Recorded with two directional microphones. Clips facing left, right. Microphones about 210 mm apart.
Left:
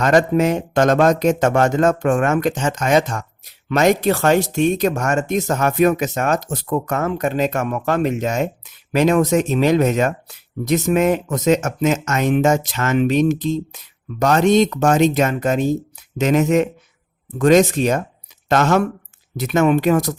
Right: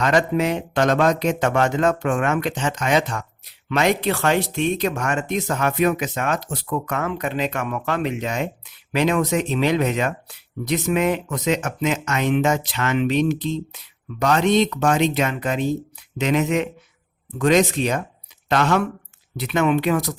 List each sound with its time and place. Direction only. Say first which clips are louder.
0.0 s speech: left 4 dB; 45° left (ahead or behind)